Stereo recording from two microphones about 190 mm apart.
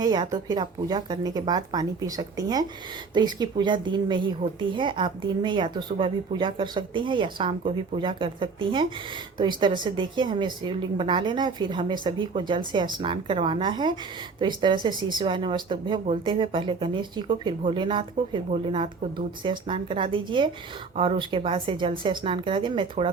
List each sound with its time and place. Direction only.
0.0 s speech: 20° right (ahead or behind)